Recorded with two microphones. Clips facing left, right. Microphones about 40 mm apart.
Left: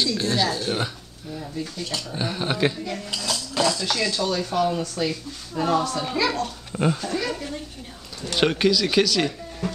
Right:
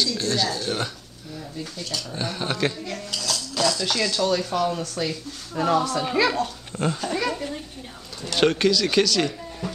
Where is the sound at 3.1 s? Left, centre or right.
Centre.